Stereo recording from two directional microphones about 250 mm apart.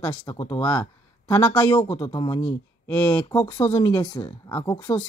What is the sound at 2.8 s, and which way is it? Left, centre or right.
Speech, centre.